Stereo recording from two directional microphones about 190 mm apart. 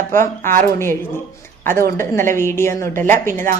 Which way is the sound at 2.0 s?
15° left (ahead or behind).